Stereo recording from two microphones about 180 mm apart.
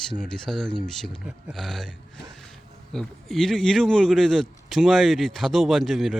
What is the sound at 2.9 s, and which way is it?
Speech, centre (ahead or behind).